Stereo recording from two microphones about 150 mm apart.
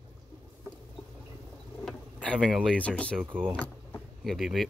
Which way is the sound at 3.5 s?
10° left (ahead or behind).